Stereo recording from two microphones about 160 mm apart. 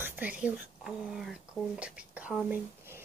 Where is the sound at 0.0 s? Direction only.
10° right (ahead or behind).